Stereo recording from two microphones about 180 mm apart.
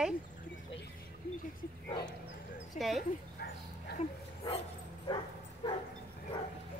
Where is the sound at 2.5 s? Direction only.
Centre (ahead or behind).